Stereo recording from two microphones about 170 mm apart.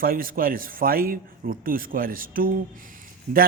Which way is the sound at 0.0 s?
60° right (ahead or behind).